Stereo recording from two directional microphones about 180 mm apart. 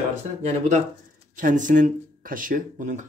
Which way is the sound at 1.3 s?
45° right (ahead or behind).